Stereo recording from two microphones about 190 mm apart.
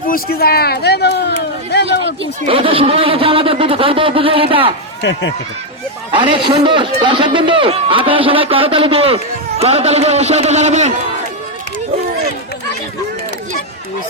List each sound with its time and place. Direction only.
0.1 s speech: 55° left (ahead or behind)
1.7 s a sound: 65° left (ahead or behind)
2.4 s a man's voice: 30° right (ahead or behind)
5.0 s speech: 65° left (ahead or behind)
6.1 s a man's voice: 25° right (ahead or behind)